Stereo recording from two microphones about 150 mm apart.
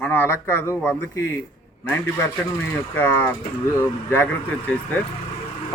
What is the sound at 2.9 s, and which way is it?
Speech, 15° left (ahead or behind).